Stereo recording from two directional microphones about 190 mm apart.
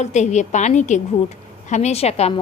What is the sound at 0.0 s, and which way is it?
A woman's voice, 35° left (ahead or behind).